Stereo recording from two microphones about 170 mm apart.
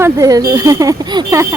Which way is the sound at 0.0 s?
20° right (ahead or behind).